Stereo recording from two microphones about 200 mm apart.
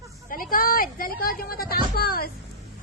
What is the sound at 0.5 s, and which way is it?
A woman's voice, 45° left (ahead or behind).